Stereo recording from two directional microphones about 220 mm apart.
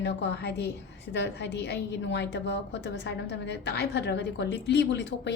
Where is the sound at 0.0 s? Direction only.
50° left (ahead or behind).